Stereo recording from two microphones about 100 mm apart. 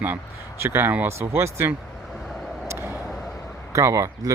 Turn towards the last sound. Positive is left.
turn(degrees=-30)  # may be behind; listen again after turning